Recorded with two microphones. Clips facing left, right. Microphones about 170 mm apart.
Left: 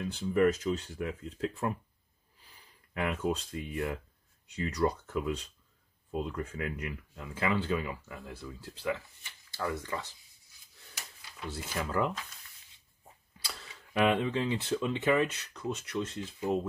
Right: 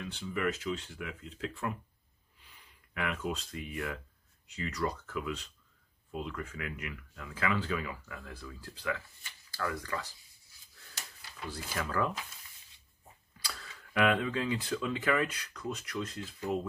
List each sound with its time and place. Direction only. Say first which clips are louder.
0.0 s speech: left 7 dB; 40° left (ahead or behind); by 10.1 s 25° left (ahead or behind)
11.4 s speech: left 1 dB; 25° left (ahead or behind)
13.5 s speech: even; 25° left (ahead or behind)